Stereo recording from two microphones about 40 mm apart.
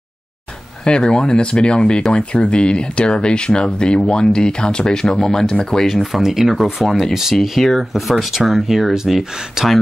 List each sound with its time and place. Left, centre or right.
0.8 s speech: left
6.1 s speech: centre